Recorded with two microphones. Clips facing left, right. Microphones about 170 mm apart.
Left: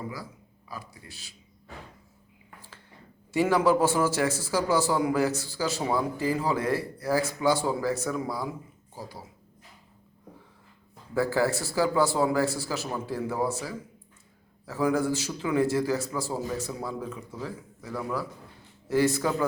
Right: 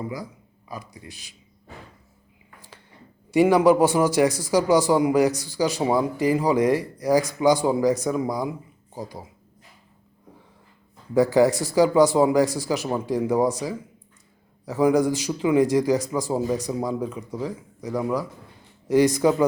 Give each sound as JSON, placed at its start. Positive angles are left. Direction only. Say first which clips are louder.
{"t": 0.7, "sound": "a man's voice", "louder": "right 5 dB", "side_deg": -20}
{"t": 3.3, "sound": "a man's voice", "louder": "right 6 dB", "side_deg": -15}
{"t": 11.1, "sound": "a man's voice", "louder": "right 8 dB", "side_deg": -15}